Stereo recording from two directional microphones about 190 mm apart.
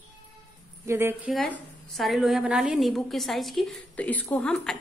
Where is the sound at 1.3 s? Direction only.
5° left (ahead or behind).